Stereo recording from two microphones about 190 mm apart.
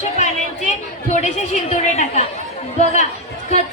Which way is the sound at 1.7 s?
35° left (ahead or behind).